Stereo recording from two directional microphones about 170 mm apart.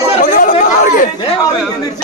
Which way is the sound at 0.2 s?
55° left (ahead or behind).